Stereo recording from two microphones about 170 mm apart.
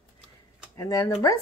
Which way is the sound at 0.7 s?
20° left (ahead or behind).